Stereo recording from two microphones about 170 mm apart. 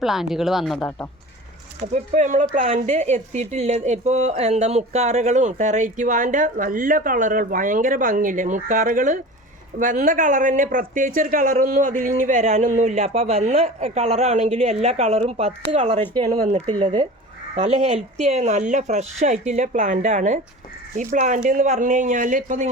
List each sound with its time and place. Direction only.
0.0 s speech: centre (ahead or behind)
1.9 s speech: 45° right (ahead or behind)
17.5 s speech: 45° right (ahead or behind)